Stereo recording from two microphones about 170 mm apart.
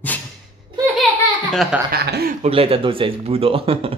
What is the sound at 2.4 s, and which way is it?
Speech, 35° right (ahead or behind).